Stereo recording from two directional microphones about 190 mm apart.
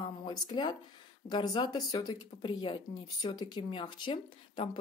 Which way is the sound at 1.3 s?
20° left (ahead or behind).